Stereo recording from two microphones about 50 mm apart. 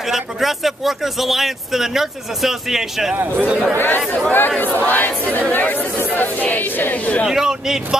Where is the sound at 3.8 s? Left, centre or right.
Left.